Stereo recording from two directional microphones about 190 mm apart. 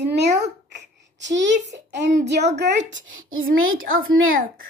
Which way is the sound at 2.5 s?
65° right (ahead or behind).